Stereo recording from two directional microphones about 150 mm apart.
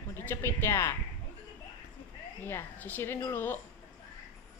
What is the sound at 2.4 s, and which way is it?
A woman's voice, 15° left (ahead or behind).